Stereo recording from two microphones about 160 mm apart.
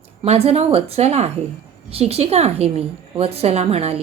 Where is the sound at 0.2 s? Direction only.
40° right (ahead or behind).